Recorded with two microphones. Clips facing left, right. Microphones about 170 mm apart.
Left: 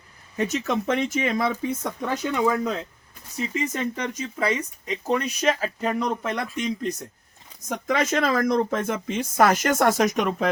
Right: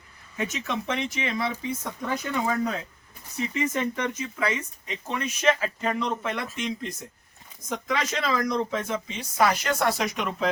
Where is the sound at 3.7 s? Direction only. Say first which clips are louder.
Even; 35° left (ahead or behind).